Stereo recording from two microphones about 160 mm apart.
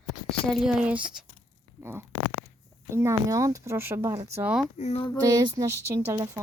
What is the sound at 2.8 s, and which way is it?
Speech, 15° right (ahead or behind).